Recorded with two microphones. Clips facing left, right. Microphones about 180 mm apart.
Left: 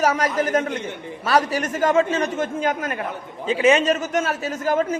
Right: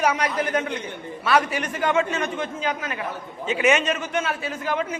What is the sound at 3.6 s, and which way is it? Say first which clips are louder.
A man's voice: left 4 dB; 35° left (ahead or behind).